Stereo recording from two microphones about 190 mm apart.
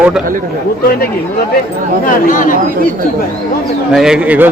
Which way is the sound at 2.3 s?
45° left (ahead or behind).